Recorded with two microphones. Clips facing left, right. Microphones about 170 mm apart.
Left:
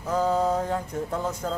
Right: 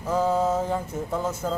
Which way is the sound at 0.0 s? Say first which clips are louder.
Right 1 dB; 5° right (ahead or behind).